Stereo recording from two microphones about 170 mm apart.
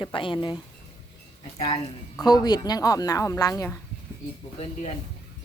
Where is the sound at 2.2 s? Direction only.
25° left (ahead or behind).